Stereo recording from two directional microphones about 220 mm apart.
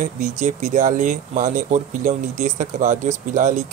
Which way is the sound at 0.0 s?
35° right (ahead or behind).